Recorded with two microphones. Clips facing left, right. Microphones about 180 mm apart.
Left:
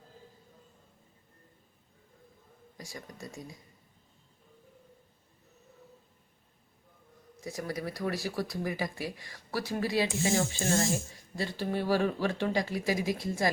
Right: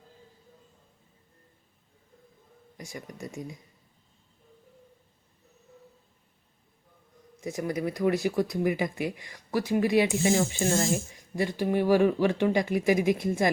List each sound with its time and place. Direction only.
2.7 s speech: 20° right (ahead or behind)
7.4 s speech: 20° right (ahead or behind)